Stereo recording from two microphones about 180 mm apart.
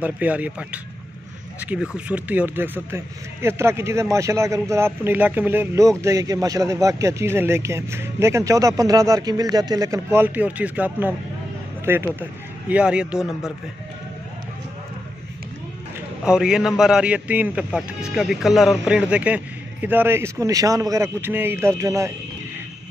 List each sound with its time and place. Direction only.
0.0 s a man's voice: 10° right (ahead or behind)
16.3 s a man's voice: 5° right (ahead or behind)